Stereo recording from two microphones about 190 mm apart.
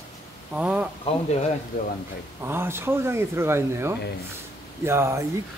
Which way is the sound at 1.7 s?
45° left (ahead or behind).